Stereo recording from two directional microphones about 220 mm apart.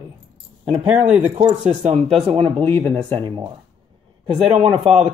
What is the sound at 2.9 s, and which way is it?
Speech, 20° right (ahead or behind).